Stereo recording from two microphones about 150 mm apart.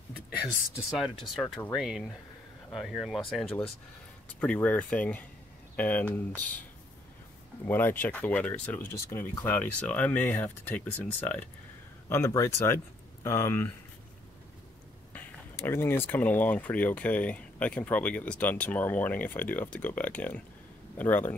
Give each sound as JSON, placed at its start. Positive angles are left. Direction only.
{"t": 1.3, "sound": "speech", "side_deg": 0}
{"t": 7.6, "sound": "speech", "side_deg": 15}
{"t": 15.1, "sound": "speech", "side_deg": 15}